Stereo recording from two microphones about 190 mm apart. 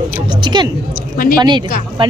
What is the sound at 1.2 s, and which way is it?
Speech, 50° left (ahead or behind).